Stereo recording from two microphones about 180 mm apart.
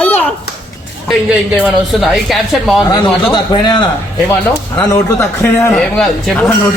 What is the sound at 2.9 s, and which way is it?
A man's voice, 25° left (ahead or behind).